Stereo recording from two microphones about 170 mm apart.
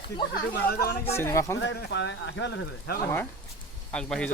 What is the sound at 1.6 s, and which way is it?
Speech, 90° left.